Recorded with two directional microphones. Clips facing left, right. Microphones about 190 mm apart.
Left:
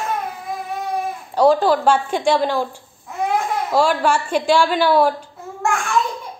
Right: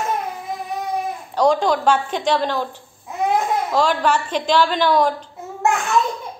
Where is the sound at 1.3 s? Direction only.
5° left (ahead or behind).